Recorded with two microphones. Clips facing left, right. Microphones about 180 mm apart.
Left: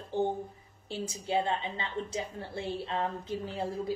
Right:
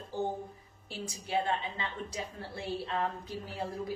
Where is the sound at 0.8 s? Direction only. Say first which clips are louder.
Left 5 dB; 25° left (ahead or behind).